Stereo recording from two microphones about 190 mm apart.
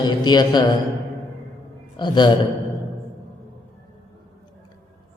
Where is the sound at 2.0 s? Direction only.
25° left (ahead or behind).